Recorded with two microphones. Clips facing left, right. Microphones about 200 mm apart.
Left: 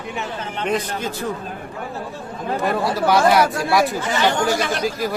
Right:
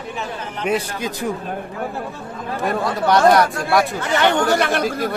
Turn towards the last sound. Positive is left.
turn(degrees=0)  # may be behind; listen again after turning